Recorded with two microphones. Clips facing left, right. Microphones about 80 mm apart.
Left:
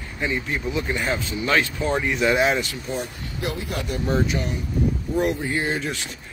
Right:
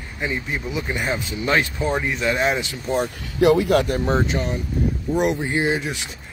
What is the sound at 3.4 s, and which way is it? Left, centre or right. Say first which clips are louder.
Speech: right 13 dB; right.